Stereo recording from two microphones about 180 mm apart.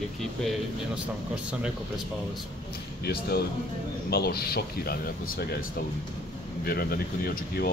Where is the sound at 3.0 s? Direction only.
60° left (ahead or behind).